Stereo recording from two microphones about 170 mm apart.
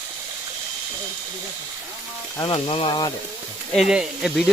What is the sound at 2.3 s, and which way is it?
Speech, 25° left (ahead or behind).